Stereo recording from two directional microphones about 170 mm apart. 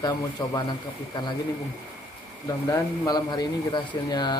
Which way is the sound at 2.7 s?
20° left (ahead or behind).